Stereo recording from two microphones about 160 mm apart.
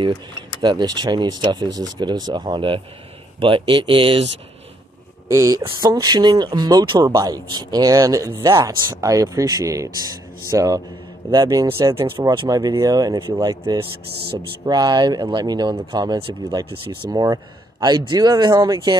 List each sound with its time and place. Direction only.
0.0 s speech: 30° right (ahead or behind)
5.3 s speech: 20° right (ahead or behind)
17.1 s speech: 20° right (ahead or behind)